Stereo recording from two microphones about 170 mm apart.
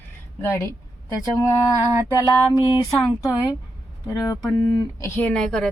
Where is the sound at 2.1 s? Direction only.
20° left (ahead or behind).